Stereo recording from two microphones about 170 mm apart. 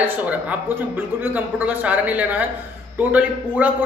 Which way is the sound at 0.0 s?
10° right (ahead or behind).